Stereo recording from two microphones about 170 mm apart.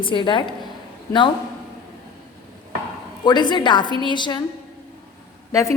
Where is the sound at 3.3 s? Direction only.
25° left (ahead or behind).